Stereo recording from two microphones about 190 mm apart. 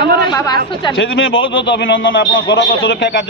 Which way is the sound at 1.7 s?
70° left (ahead or behind).